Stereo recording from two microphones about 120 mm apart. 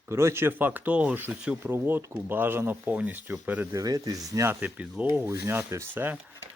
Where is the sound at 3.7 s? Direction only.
30° right (ahead or behind).